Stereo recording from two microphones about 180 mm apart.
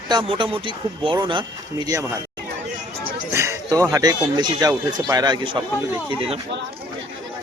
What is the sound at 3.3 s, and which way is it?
Speech, 15° right (ahead or behind).